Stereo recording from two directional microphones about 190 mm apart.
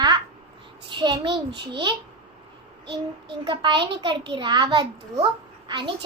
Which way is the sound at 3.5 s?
25° right (ahead or behind).